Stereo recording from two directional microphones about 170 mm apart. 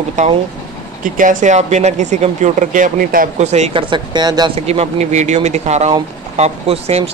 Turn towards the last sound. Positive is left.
turn(degrees=-35)  # may be behind; listen again after turning